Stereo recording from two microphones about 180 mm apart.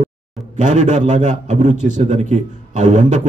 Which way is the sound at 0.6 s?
40° right (ahead or behind).